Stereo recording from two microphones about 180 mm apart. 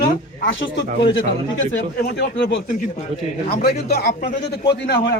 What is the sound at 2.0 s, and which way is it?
A man's voice, 70° left (ahead or behind).